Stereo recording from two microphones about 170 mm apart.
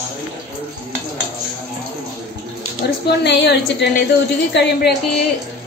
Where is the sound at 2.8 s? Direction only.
75° left (ahead or behind).